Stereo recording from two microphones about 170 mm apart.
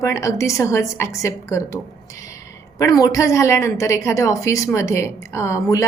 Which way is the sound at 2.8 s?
20° left (ahead or behind).